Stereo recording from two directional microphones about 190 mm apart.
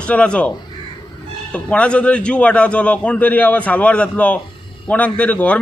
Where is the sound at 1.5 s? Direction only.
5° left (ahead or behind).